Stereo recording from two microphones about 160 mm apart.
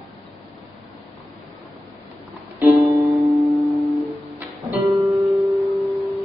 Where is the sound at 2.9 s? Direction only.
20° right (ahead or behind).